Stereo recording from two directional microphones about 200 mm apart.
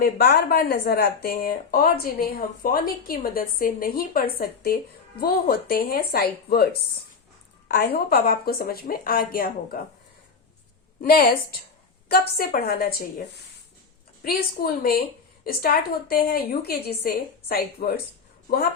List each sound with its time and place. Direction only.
0.0 s a woman's voice: 50° left (ahead or behind)
7.7 s a woman's voice: 55° left (ahead or behind)
11.0 s a woman's voice: 50° left (ahead or behind)